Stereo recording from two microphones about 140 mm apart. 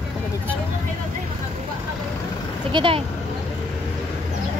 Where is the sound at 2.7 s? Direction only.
40° right (ahead or behind).